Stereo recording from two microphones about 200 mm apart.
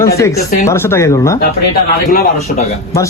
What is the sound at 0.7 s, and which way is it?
Speech, 15° left (ahead or behind).